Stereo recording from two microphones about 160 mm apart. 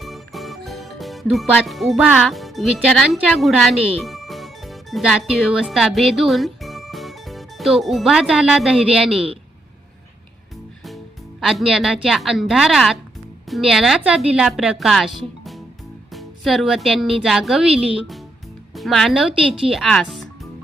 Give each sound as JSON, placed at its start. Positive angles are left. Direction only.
{"t": 0.0, "sound": "music", "side_deg": 0}
{"t": 1.6, "sound": "speech", "side_deg": 0}
{"t": 10.8, "sound": "a woman's voice", "side_deg": 0}
{"t": 19.4, "sound": "a woman's voice", "side_deg": -35}
{"t": 19.7, "sound": "music", "side_deg": 0}